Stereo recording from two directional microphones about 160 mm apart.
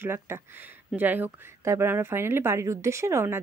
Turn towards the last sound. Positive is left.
turn(degrees=-15)  # may be behind; listen again after turning